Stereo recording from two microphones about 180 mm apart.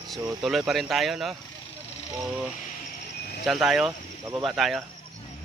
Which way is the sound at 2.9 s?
60° left (ahead or behind).